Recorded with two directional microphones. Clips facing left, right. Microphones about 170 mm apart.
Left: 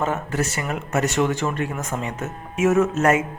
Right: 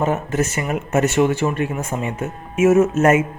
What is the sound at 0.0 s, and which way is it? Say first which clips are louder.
A man's voice: right 4 dB; 20° right (ahead or behind).